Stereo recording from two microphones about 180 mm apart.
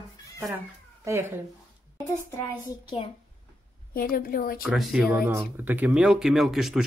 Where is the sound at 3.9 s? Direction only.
55° left (ahead or behind).